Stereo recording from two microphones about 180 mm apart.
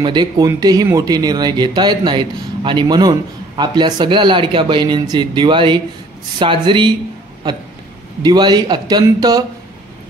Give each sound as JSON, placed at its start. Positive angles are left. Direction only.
{"t": 0.0, "sound": "speech", "side_deg": -25}
{"t": 8.2, "sound": "speech", "side_deg": -25}